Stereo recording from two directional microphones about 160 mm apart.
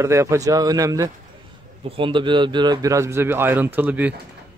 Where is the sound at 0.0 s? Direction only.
20° right (ahead or behind).